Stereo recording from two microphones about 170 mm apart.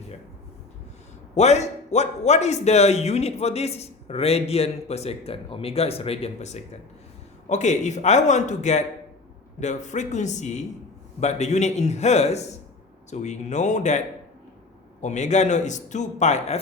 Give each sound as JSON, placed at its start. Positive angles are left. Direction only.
{"t": 1.4, "sound": "a man's voice", "side_deg": 40}
{"t": 15.0, "sound": "a man's voice", "side_deg": 45}